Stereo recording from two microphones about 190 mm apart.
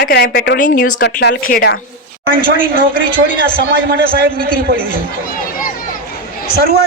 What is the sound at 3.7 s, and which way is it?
A man's voice, 50° right (ahead or behind).